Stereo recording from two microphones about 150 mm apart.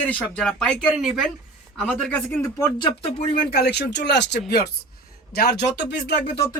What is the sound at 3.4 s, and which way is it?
Speech, 90° left.